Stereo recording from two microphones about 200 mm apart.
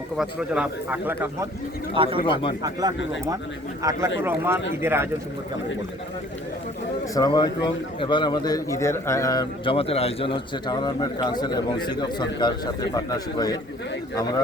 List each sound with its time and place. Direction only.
0.2 s a man's voice: 5° right (ahead or behind)
2.0 s speech: 25° right (ahead or behind)
2.2 s a man's voice: 25° left (ahead or behind)
3.8 s a man's voice: 15° right (ahead or behind)
7.1 s a man's voice: 20° left (ahead or behind)